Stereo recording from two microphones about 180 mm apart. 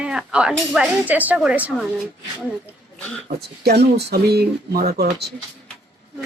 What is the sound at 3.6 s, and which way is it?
Speech, 60° right (ahead or behind).